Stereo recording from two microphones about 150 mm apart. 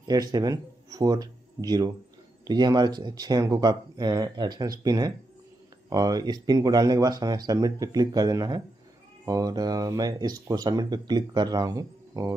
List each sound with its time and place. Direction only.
0.1 s speech: 25° right (ahead or behind)